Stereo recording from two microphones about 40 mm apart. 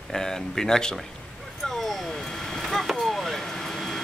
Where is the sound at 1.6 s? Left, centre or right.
Centre.